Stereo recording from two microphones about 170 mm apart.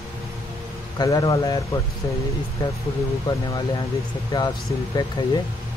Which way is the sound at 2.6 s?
25° left (ahead or behind).